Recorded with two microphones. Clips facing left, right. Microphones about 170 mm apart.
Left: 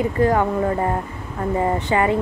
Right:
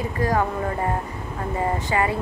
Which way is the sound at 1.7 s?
20° left (ahead or behind).